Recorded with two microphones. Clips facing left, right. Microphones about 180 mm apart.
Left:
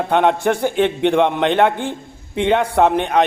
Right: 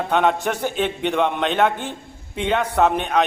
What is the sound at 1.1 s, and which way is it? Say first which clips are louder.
A man's voice: left 5 dB; 15° left (ahead or behind).